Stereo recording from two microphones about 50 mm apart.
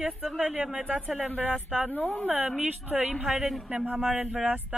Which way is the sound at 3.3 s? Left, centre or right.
Centre.